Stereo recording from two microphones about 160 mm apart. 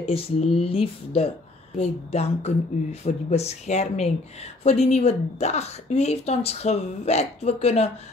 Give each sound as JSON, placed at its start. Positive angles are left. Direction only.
{"t": 0.0, "sound": "a woman's voice", "side_deg": 40}